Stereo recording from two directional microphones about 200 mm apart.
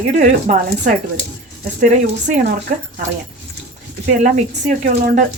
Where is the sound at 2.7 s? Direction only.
45° right (ahead or behind).